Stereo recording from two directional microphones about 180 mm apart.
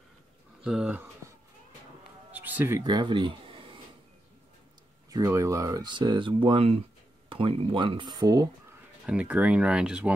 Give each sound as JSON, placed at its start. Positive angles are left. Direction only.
{"t": 0.7, "sound": "speech", "side_deg": -5}
{"t": 2.3, "sound": "music", "side_deg": -10}
{"t": 2.9, "sound": "speech", "side_deg": -25}
{"t": 5.1, "sound": "speech", "side_deg": -20}
{"t": 9.0, "sound": "speech", "side_deg": -5}